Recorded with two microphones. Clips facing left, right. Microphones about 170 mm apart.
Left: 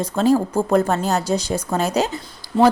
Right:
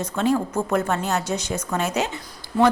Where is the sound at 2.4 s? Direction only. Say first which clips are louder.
Left 4 dB; 40° left (ahead or behind).